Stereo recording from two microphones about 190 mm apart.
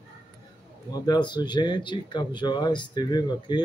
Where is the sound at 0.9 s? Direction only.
20° left (ahead or behind).